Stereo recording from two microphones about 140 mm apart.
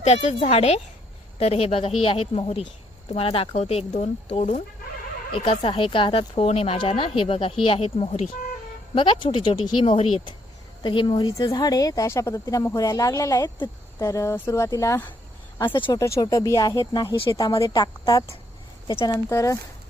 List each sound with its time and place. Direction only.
0.0 s speech: 50° left (ahead or behind)
5.3 s speech: 45° left (ahead or behind)
9.0 s speech: 35° left (ahead or behind)